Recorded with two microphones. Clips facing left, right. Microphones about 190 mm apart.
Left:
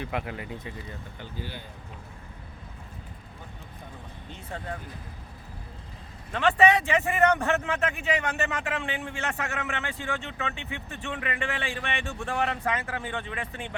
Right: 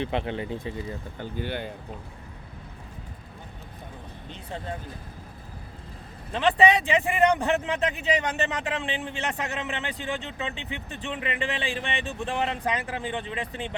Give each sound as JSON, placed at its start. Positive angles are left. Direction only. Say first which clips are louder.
{"t": 0.0, "sound": "speech", "louder": "right 5 dB", "side_deg": -25}
{"t": 1.2, "sound": "speech", "louder": "right 9 dB", "side_deg": -60}
{"t": 4.3, "sound": "speech", "louder": "right 2 dB", "side_deg": -20}
{"t": 6.3, "sound": "speech", "louder": "right 1 dB", "side_deg": -20}